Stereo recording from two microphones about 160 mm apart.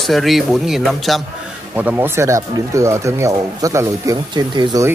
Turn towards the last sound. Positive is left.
turn(degrees=-25)  # may be behind; listen again after turning